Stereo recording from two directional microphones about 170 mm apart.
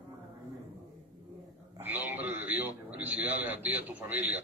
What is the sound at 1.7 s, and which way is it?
A man's voice, 10° right (ahead or behind).